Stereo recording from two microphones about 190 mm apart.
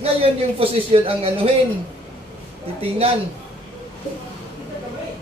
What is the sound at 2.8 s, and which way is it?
Speech, 30° right (ahead or behind).